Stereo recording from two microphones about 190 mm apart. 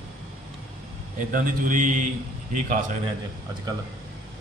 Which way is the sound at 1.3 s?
45° right (ahead or behind).